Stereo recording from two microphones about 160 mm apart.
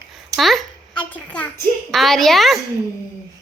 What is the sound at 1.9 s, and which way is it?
Speech, centre (ahead or behind).